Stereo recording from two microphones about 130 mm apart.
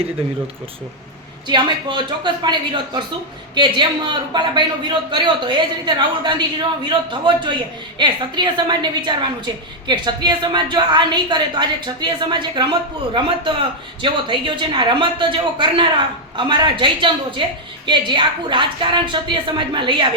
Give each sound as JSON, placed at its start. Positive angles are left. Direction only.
{"t": 1.5, "sound": "speech", "side_deg": -35}
{"t": 14.0, "sound": "speech", "side_deg": -40}